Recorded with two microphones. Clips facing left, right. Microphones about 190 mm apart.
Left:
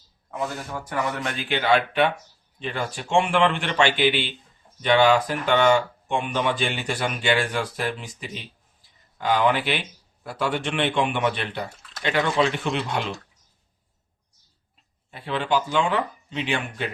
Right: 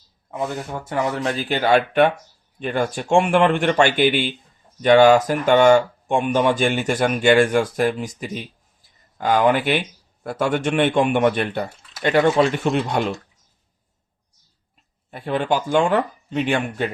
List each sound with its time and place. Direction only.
0.3 s speech: 20° right (ahead or behind); by 13.1 s 45° right (ahead or behind)
15.1 s speech: 50° right (ahead or behind)